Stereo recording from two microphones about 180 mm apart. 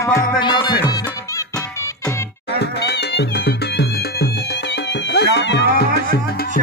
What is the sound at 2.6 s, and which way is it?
Music, 70° left (ahead or behind).